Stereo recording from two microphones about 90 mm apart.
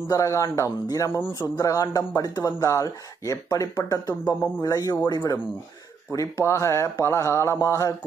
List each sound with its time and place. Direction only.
0.1 s speech: 35° left (ahead or behind)
1.6 s speech: 40° left (ahead or behind)